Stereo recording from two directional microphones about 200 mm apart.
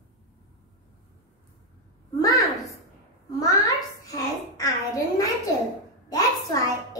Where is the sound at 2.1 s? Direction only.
20° left (ahead or behind).